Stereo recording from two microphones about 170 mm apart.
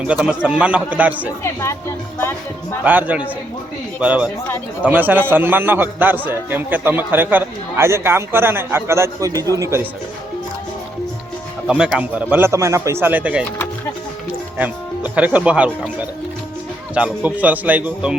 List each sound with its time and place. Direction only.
0.1 s a man's voice: 5° right (ahead or behind)
2.8 s a man's voice: 10° right (ahead or behind)
11.7 s a man's voice: 10° right (ahead or behind)
14.6 s a man's voice: 10° right (ahead or behind)